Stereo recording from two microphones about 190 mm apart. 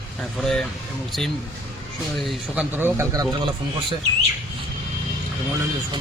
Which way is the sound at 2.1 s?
Centre (ahead or behind).